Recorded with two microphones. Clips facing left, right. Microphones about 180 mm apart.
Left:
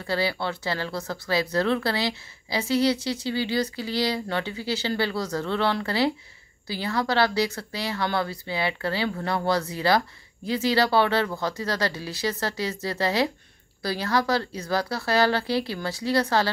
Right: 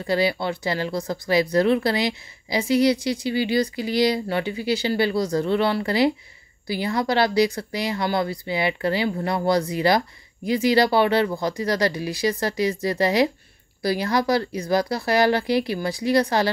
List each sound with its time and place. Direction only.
0.0 s speech: 15° right (ahead or behind)